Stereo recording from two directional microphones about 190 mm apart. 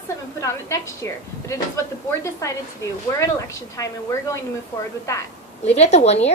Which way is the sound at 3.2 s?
15° left (ahead or behind).